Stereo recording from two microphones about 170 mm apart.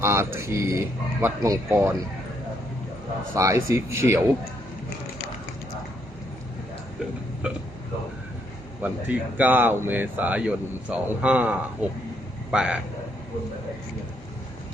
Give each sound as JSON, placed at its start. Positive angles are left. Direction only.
{"t": 0.0, "sound": "speech", "side_deg": -15}
{"t": 3.3, "sound": "speech", "side_deg": -20}
{"t": 8.8, "sound": "a man's voice", "side_deg": -10}